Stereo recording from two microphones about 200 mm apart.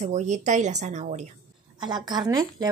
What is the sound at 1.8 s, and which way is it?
Speech, 20° right (ahead or behind).